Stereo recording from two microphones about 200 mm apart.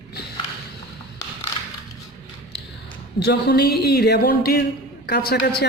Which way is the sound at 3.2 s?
55° left (ahead or behind).